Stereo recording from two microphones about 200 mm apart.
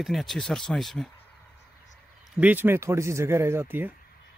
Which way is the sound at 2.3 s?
10° right (ahead or behind).